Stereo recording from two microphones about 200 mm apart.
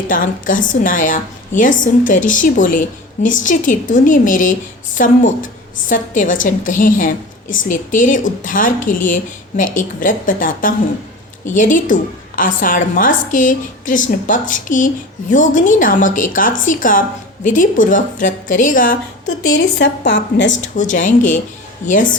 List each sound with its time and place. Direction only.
0.1 s a woman's voice: 40° left (ahead or behind)
19.5 s a woman's voice: 60° left (ahead or behind)
20.5 s a woman's voice: 40° left (ahead or behind)